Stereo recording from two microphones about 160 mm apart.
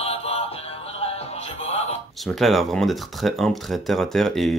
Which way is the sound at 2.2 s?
Centre (ahead or behind).